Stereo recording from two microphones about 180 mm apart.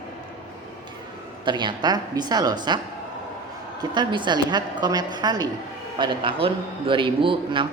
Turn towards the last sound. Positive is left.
turn(degrees=-30)  # may be behind; listen again after turning